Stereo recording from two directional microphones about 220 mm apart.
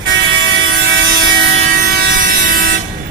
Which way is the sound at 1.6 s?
40° right (ahead or behind).